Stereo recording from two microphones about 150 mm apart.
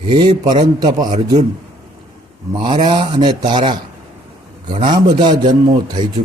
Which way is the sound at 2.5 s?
30° right (ahead or behind).